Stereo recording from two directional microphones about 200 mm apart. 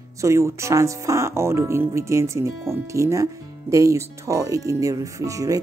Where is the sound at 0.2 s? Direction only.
15° right (ahead or behind).